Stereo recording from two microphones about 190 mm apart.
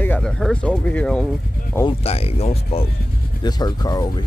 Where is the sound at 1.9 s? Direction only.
30° left (ahead or behind).